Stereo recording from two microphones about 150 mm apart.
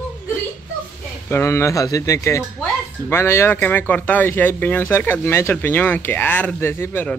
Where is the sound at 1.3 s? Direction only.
15° left (ahead or behind).